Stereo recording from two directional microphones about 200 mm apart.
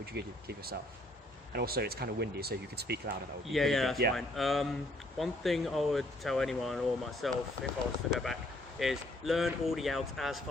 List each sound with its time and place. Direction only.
0.0 s speech: 55° right (ahead or behind)
3.4 s speech: centre (ahead or behind)